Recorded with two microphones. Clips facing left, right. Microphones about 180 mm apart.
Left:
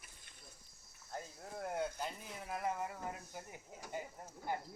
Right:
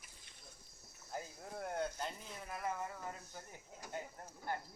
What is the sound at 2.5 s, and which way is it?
Speech, 20° left (ahead or behind).